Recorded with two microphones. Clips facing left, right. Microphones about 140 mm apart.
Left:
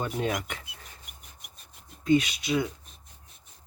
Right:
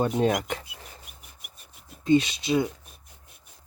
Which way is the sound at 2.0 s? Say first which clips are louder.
Right 2 dB; 25° right (ahead or behind).